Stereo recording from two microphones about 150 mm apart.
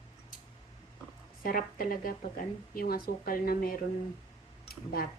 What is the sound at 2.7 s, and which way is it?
Speech, 85° left.